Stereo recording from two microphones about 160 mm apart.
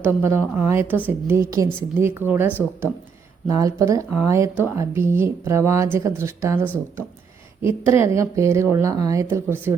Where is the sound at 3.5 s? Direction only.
20° right (ahead or behind).